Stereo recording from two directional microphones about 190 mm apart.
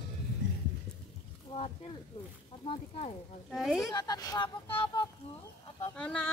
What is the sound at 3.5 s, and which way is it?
Speech, centre (ahead or behind).